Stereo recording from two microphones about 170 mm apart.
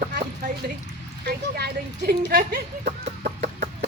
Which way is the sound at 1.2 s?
70° right (ahead or behind).